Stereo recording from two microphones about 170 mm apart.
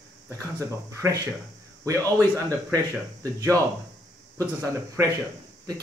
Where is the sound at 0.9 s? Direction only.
15° right (ahead or behind).